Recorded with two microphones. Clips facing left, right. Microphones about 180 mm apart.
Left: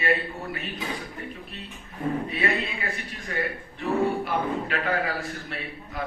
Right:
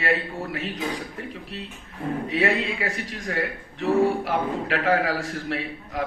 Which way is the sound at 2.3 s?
90° right.